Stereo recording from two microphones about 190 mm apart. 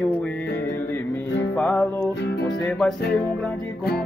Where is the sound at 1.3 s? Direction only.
75° left (ahead or behind).